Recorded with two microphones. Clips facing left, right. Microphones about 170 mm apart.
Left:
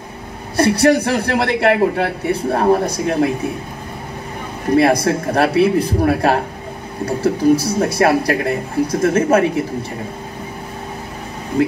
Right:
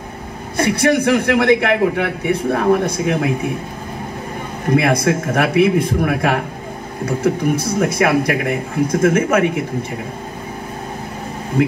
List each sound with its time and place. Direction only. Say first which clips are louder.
0.6 s a man's voice: left 2 dB; 35° left (ahead or behind)
4.7 s a man's voice: left 2 dB; 35° left (ahead or behind)